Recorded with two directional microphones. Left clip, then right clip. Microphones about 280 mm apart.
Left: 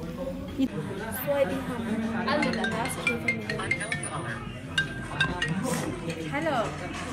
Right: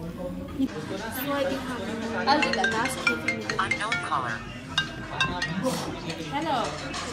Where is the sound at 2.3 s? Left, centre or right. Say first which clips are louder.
Right 5 dB; right.